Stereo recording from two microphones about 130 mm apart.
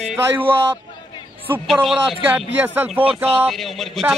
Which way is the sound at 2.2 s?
15° right (ahead or behind).